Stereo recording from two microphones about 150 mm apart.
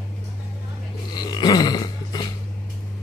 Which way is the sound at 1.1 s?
30° left (ahead or behind).